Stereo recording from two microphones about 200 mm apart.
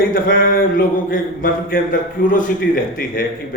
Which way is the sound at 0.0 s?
45° left (ahead or behind).